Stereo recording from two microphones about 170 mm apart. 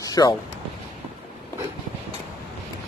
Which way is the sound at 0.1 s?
20° left (ahead or behind).